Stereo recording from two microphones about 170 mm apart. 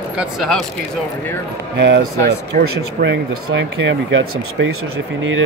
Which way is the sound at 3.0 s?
90° right.